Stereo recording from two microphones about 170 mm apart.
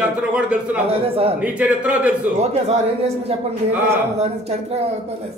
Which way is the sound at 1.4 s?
10° right (ahead or behind).